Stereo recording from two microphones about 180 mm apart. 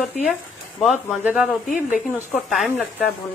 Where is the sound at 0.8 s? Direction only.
5° right (ahead or behind).